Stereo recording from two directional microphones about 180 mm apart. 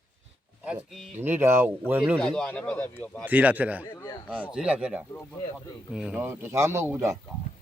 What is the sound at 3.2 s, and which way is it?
Speech, 10° right (ahead or behind).